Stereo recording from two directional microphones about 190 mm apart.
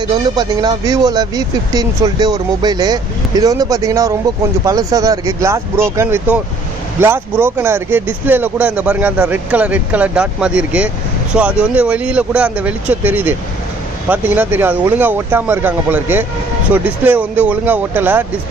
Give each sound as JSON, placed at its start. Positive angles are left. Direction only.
{"t": 0.1, "sound": "speech", "side_deg": -25}